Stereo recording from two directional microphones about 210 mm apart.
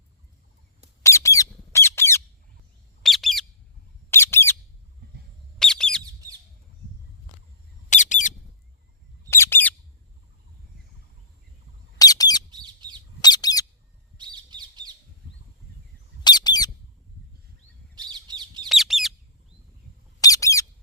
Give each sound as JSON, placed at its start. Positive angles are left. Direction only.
{"t": 1.0, "sound": "squawk", "side_deg": 15}
{"t": 3.0, "sound": "bird", "side_deg": 0}
{"t": 4.1, "sound": "squawk", "side_deg": 10}
{"t": 5.5, "sound": "bird", "side_deg": 5}
{"t": 7.9, "sound": "bird", "side_deg": 35}
{"t": 9.3, "sound": "bird", "side_deg": 10}
{"t": 11.9, "sound": "bird", "side_deg": 15}
{"t": 12.5, "sound": "bird", "side_deg": -20}
{"t": 13.2, "sound": "bird", "side_deg": 20}
{"t": 14.2, "sound": "squawk", "side_deg": -20}
{"t": 16.2, "sound": "squawk", "side_deg": 20}
{"t": 17.9, "sound": "bird", "side_deg": -20}
{"t": 18.7, "sound": "bird", "side_deg": 0}
{"t": 20.2, "sound": "bird", "side_deg": 15}